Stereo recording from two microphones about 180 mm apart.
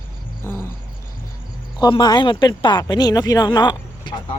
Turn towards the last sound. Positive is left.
turn(degrees=25)  # may be behind; listen again after turning